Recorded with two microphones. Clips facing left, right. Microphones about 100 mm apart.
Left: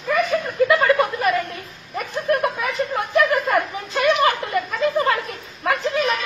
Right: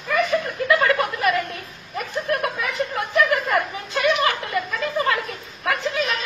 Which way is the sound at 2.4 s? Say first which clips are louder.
Left 2 dB; 30° left (ahead or behind).